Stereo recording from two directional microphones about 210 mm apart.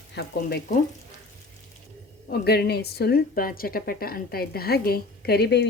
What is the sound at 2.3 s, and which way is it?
A woman's voice, 50° left (ahead or behind).